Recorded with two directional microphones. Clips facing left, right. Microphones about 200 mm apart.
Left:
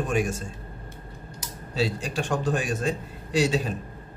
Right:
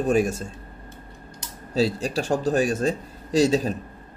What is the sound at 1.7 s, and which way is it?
Speech, 40° right (ahead or behind).